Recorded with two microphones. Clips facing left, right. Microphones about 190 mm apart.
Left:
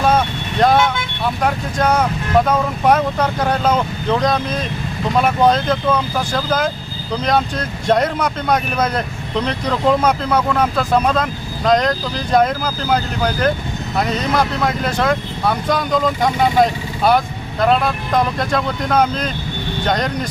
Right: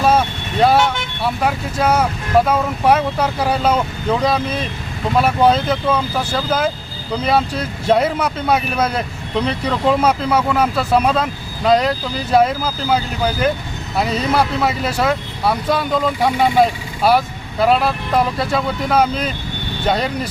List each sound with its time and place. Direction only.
0.0 s vehicle: 5° right (ahead or behind)
1.2 s speech: 5° right (ahead or behind)